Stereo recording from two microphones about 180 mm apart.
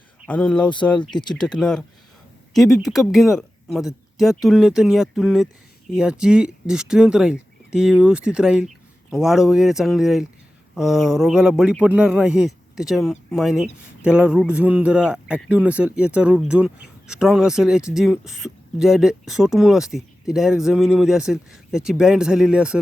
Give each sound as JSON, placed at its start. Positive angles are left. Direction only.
{"t": 0.3, "sound": "a man's voice", "side_deg": 5}